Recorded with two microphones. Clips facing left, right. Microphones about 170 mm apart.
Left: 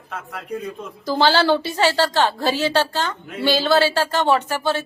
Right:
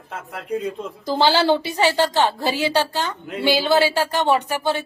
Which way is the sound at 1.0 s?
20° right (ahead or behind).